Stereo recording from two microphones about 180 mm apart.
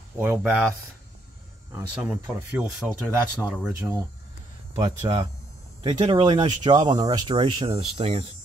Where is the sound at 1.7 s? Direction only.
10° right (ahead or behind).